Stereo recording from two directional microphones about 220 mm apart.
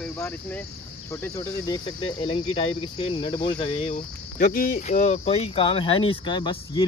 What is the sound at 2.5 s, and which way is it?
Speech, 25° left (ahead or behind).